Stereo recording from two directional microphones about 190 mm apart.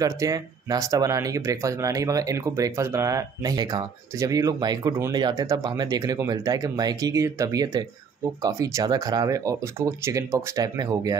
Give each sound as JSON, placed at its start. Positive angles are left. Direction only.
{"t": 0.0, "sound": "speech", "side_deg": -20}